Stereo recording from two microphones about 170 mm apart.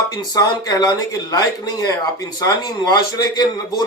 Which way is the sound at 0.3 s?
20° left (ahead or behind).